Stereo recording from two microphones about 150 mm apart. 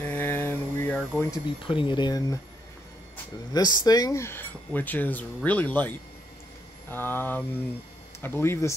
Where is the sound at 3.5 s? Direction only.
25° left (ahead or behind).